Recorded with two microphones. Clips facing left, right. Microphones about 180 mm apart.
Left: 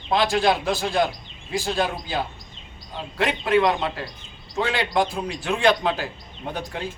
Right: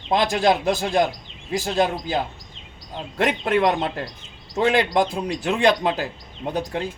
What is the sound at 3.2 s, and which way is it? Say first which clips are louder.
Speech: even; 45° right (ahead or behind).